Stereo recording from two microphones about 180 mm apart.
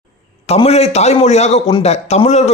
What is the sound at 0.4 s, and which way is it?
Speech, 35° left (ahead or behind).